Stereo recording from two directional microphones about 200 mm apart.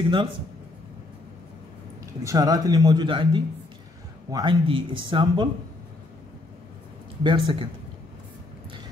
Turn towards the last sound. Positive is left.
turn(degrees=-25)  # may be behind; listen again after turning